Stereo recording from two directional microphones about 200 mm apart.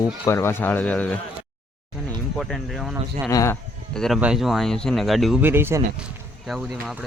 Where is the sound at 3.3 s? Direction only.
15° left (ahead or behind).